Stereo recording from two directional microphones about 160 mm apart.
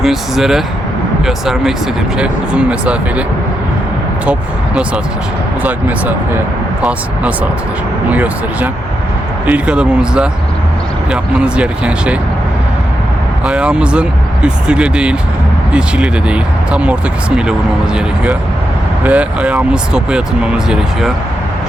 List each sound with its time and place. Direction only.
0.0 s speech: centre (ahead or behind)
4.3 s speech: 5° right (ahead or behind)
8.1 s speech: 10° right (ahead or behind)
13.4 s speech: 5° right (ahead or behind)